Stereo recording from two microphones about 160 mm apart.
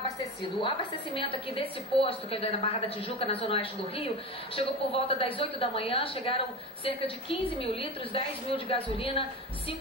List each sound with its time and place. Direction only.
0.6 s a woman's voice: 35° left (ahead or behind)